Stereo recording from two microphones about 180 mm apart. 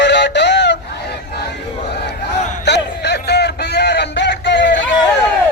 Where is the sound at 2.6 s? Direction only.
70° left (ahead or behind).